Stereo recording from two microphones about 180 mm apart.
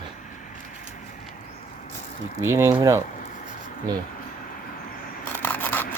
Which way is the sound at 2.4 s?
15° right (ahead or behind).